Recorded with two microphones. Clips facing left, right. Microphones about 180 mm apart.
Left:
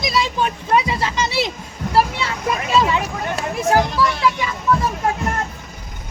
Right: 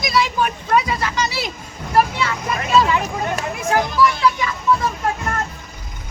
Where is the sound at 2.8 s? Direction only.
25° left (ahead or behind).